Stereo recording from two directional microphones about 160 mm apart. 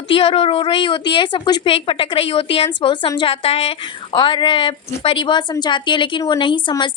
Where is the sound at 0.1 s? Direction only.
35° left (ahead or behind).